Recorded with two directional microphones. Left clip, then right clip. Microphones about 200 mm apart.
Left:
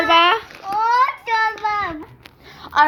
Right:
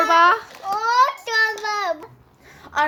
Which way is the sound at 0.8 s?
30° right (ahead or behind).